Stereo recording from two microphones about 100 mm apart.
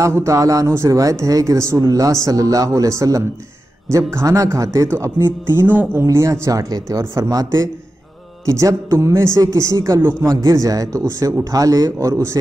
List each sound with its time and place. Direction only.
0.0 s speech: 30° right (ahead or behind)